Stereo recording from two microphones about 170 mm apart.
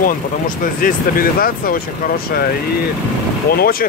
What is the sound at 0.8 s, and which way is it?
Speech, 55° left (ahead or behind).